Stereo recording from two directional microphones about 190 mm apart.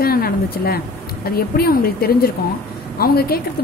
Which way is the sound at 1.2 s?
55° left (ahead or behind).